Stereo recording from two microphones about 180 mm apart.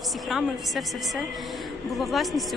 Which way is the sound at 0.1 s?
Centre (ahead or behind).